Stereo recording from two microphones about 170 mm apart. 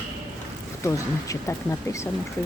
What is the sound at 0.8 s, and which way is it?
Speech, 20° left (ahead or behind).